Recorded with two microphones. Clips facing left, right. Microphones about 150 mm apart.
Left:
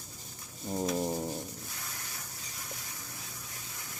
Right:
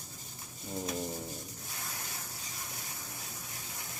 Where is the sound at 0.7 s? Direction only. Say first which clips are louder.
Left 5 dB; 40° left (ahead or behind).